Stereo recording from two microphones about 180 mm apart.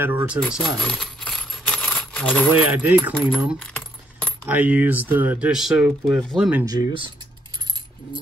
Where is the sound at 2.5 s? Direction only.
10° right (ahead or behind).